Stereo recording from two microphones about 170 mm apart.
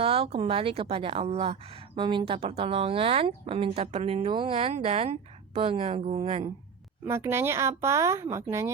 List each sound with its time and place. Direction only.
0.0 s a woman's voice: 35° right (ahead or behind)
7.0 s speech: 15° right (ahead or behind)